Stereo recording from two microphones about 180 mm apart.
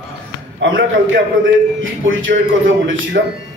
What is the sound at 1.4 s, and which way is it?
A man's voice, 90° right.